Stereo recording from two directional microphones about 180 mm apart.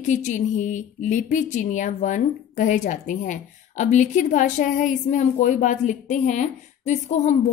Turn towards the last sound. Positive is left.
turn(degrees=40)  # may be behind; listen again after turning